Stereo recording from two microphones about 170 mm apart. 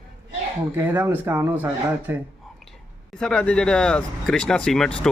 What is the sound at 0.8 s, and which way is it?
Speech, 15° right (ahead or behind).